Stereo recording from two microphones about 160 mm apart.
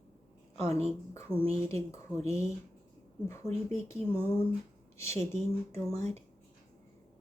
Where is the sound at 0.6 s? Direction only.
40° right (ahead or behind).